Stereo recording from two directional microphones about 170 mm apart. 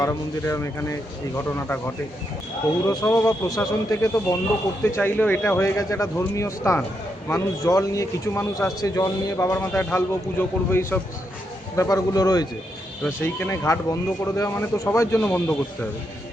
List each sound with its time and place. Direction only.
0.0 s speech: 15° left (ahead or behind)
2.8 s speech: 20° left (ahead or behind)